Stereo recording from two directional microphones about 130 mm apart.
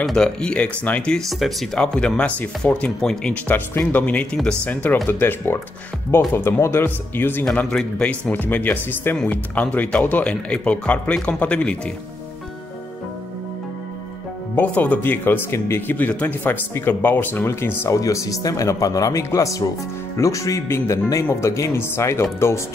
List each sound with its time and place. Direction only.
0.0 s speech: 5° left (ahead or behind)
14.5 s speech: 15° left (ahead or behind)